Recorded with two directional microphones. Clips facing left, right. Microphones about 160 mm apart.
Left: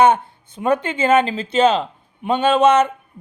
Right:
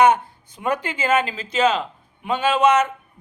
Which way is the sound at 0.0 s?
25° left (ahead or behind).